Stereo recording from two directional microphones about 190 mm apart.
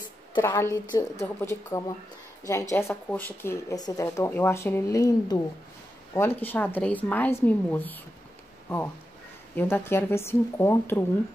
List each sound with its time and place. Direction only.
0.3 s speech: 15° left (ahead or behind)